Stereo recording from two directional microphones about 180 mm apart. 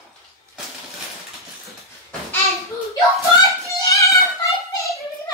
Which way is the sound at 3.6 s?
15° left (ahead or behind).